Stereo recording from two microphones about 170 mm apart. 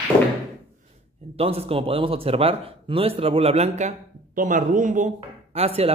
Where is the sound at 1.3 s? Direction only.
35° right (ahead or behind).